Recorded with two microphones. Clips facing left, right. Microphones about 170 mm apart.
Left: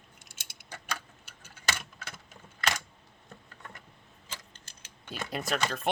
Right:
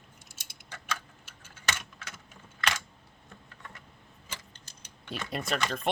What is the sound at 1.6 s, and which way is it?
Keys jangling, 35° left (ahead or behind).